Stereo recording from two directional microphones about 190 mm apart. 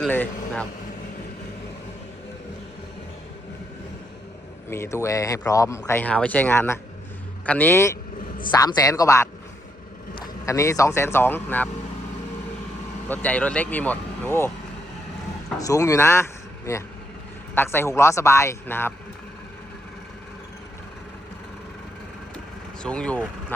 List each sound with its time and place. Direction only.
0.0 s speech: 5° left (ahead or behind)
4.7 s speech: 15° left (ahead or behind)
10.4 s speech: 15° left (ahead or behind)
13.1 s speech: 10° left (ahead or behind)
15.5 s speech: 20° left (ahead or behind)
22.8 s speech: 5° left (ahead or behind)